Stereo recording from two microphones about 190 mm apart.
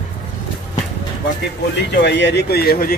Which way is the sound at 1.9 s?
65° left (ahead or behind).